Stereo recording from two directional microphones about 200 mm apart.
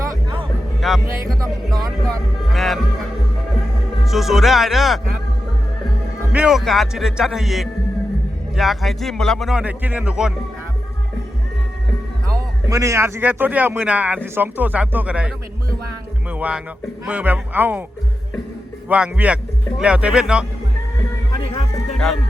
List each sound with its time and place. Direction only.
0.0 s music: 20° right (ahead or behind)
0.8 s music: centre (ahead or behind)
1.4 s speech: 20° right (ahead or behind)
2.0 s a man's voice: centre (ahead or behind)
6.3 s a man's voice: 5° right (ahead or behind)
12.6 s speech: 15° right (ahead or behind)
16.3 s speech: 5° right (ahead or behind)
18.9 s a man's voice: 5° right (ahead or behind)